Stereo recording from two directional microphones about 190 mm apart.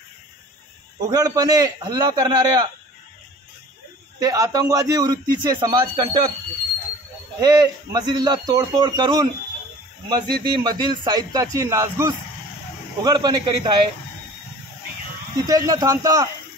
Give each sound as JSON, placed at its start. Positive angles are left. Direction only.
{"t": 1.0, "sound": "a man's voice", "side_deg": -20}
{"t": 4.2, "sound": "a man's voice", "side_deg": -20}
{"t": 7.3, "sound": "a man's voice", "side_deg": -20}
{"t": 15.4, "sound": "a man's voice", "side_deg": -20}